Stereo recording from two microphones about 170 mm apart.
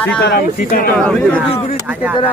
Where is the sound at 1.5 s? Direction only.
35° left (ahead or behind).